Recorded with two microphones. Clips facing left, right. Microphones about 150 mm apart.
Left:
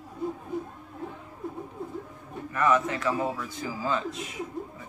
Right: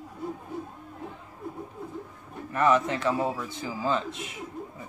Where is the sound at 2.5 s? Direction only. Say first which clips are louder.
Right 1 dB; 30° right (ahead or behind).